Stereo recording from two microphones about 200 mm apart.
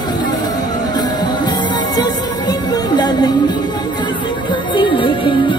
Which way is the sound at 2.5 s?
20° left (ahead or behind).